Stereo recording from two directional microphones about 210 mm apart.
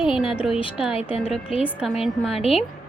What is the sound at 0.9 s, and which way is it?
Speech, 25° left (ahead or behind).